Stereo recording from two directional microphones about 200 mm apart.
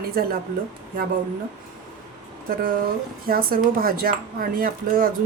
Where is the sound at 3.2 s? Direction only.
45° right (ahead or behind).